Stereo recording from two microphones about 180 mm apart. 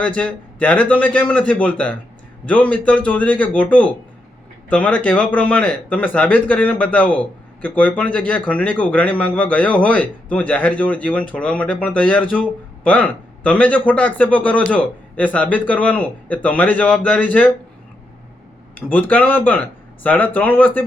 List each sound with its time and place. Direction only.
0.0 s speech: 5° left (ahead or behind)
18.9 s speech: 10° left (ahead or behind)